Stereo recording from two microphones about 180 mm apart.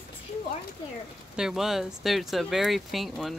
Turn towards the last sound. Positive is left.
turn(degrees=0)  # may be behind; listen again after turning